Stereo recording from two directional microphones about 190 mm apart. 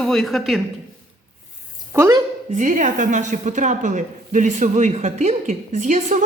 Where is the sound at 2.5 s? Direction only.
40° right (ahead or behind).